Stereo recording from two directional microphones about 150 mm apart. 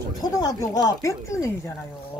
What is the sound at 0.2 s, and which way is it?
Speech, 25° left (ahead or behind).